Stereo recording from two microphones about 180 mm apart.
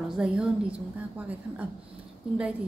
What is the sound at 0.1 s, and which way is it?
A woman's voice, 5° right (ahead or behind).